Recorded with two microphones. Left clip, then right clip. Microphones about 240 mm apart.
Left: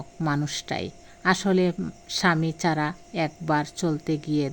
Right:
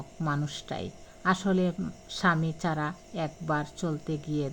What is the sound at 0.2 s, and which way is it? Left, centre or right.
A man's voice, left.